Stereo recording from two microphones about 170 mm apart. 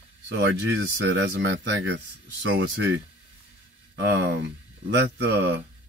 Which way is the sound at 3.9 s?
90° right.